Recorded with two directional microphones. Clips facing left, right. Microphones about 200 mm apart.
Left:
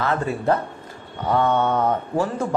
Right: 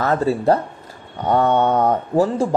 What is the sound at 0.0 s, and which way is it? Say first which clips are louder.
Speech: right 5 dB; 35° right (ahead or behind).